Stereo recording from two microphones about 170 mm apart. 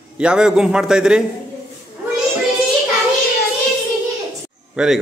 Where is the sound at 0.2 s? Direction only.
5° right (ahead or behind).